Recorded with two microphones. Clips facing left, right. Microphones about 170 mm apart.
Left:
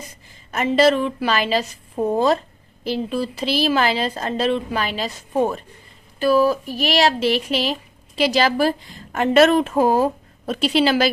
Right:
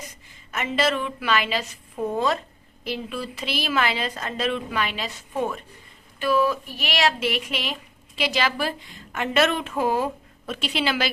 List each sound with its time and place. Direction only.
0.5 s speech: 35° left (ahead or behind)